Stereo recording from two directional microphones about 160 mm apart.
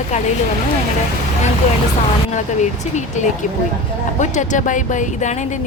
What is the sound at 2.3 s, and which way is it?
Speech, 50° left (ahead or behind).